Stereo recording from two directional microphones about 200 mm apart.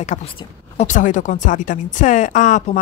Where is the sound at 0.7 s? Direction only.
40° left (ahead or behind).